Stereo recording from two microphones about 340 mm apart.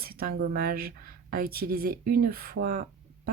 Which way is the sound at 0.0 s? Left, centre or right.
Right.